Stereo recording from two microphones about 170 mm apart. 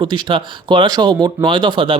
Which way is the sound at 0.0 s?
30° right (ahead or behind).